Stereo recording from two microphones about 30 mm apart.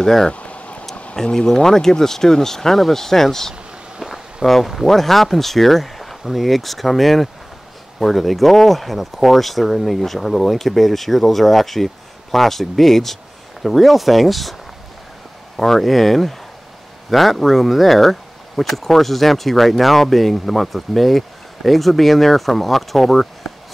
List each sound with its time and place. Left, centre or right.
0.3 s a sound: left
1.2 s speech: left
1.5 s speech: centre
4.0 s a sound: centre
4.5 s speech: centre
15.5 s speech: centre